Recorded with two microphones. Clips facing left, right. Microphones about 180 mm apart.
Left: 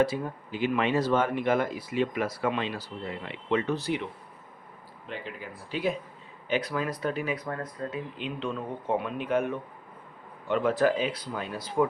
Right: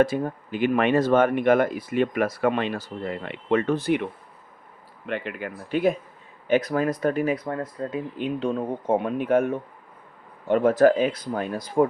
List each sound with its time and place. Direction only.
0.0 s speech: 50° right (ahead or behind)
5.0 s speech: 65° right (ahead or behind)
6.5 s speech: 45° right (ahead or behind)
7.3 s speech: 30° right (ahead or behind); by 11.9 s 45° right (ahead or behind)